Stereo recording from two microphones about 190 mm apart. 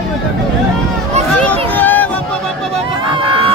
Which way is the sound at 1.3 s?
10° left (ahead or behind).